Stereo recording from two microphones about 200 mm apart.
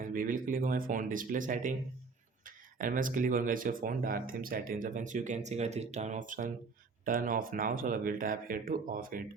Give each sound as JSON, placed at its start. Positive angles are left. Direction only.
{"t": 0.0, "sound": "speech", "side_deg": -40}
{"t": 2.7, "sound": "speech", "side_deg": -40}